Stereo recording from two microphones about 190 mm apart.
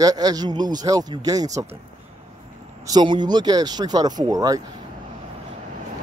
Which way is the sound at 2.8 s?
25° right (ahead or behind).